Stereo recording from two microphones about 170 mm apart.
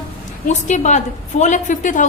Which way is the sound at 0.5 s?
45° left (ahead or behind).